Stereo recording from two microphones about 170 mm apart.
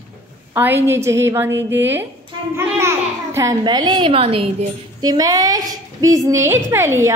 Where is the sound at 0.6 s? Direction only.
10° right (ahead or behind).